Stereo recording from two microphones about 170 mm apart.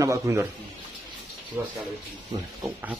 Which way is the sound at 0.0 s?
15° right (ahead or behind).